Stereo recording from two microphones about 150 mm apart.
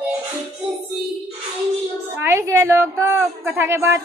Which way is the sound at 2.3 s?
15° right (ahead or behind).